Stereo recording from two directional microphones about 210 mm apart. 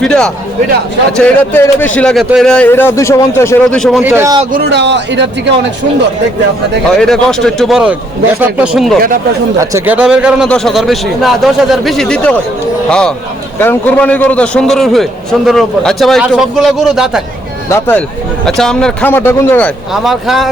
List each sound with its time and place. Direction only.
0.0 s a man's voice: 5° left (ahead or behind)
4.0 s speech: 10° right (ahead or behind)
4.5 s speech: 50° right (ahead or behind)
7.0 s a man's voice: 5° left (ahead or behind)
17.7 s a man's voice: 10° left (ahead or behind)